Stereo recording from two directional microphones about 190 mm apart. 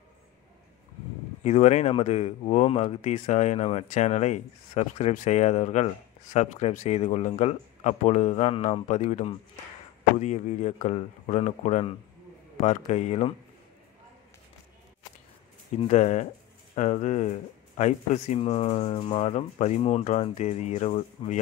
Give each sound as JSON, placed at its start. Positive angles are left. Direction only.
{"t": 1.4, "sound": "speech", "side_deg": 35}
{"t": 15.8, "sound": "speech", "side_deg": 35}